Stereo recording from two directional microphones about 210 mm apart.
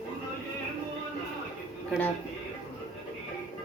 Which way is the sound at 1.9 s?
5° left (ahead or behind).